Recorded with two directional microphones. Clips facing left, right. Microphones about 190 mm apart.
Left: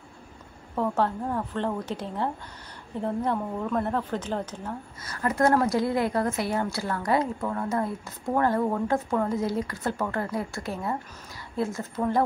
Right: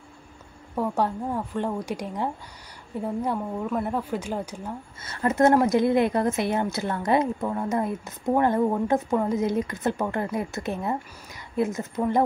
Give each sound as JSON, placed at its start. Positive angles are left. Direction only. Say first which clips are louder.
{"t": 0.7, "sound": "a woman's voice", "louder": "even", "side_deg": -10}
{"t": 5.0, "sound": "a woman's voice", "louder": "right 3 dB", "side_deg": -25}